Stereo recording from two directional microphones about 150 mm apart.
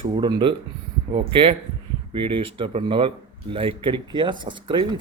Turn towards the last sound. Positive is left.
turn(degrees=-30)  # may be behind; listen again after turning